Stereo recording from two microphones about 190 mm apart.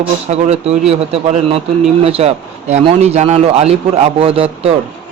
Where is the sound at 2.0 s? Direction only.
30° right (ahead or behind).